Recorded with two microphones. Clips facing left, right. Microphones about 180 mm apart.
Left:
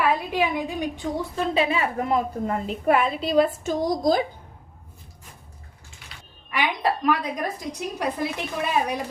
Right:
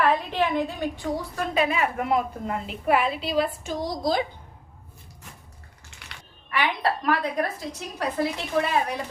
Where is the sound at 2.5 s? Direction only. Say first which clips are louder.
Left 3 dB; 40° left (ahead or behind).